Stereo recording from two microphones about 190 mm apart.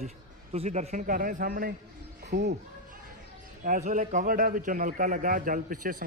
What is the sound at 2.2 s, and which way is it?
Music, 60° right (ahead or behind).